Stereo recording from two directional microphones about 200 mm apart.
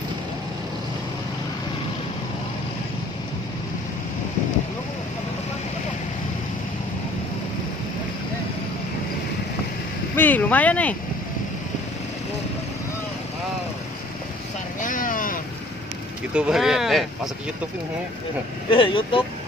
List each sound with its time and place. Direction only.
10.1 s speech: 10° left (ahead or behind)
14.8 s a sound: 40° left (ahead or behind)
16.3 s speech: 5° right (ahead or behind)
18.7 s speech: 25° left (ahead or behind)